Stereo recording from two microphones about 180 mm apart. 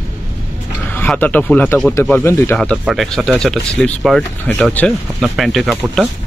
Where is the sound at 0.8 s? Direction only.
10° left (ahead or behind).